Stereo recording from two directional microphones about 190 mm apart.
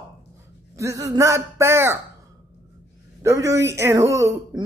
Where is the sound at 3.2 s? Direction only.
15° right (ahead or behind).